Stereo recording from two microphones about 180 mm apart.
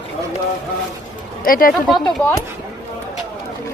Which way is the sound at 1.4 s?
50° left (ahead or behind).